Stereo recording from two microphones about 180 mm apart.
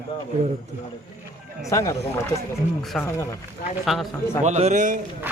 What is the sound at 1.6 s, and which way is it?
Speech, 15° left (ahead or behind).